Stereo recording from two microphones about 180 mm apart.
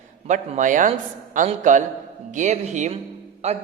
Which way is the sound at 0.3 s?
45° right (ahead or behind).